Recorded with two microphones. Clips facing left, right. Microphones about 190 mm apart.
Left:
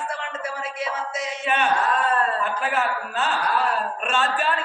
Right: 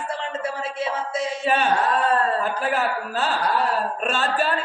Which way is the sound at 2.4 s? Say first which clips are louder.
Right 1 dB; 35° right (ahead or behind).